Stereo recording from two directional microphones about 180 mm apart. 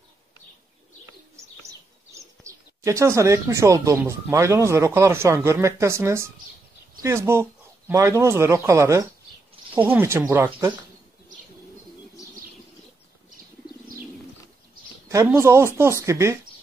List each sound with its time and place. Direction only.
2.1 s speech: 15° right (ahead or behind)
15.0 s speech: 15° right (ahead or behind)